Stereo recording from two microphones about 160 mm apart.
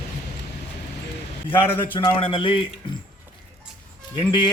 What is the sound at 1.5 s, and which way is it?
Speech, 10° left (ahead or behind).